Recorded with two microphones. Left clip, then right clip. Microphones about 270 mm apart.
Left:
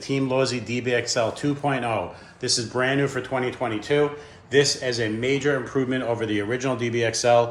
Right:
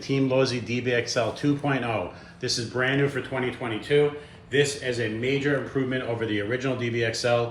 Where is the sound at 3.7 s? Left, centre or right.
Left.